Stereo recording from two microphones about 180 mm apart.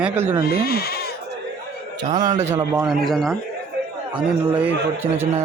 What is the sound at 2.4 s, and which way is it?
Speech, 15° right (ahead or behind).